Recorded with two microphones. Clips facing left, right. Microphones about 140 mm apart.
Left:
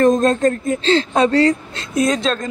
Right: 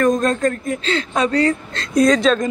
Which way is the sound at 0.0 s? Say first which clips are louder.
Left 3 dB; 25° left (ahead or behind).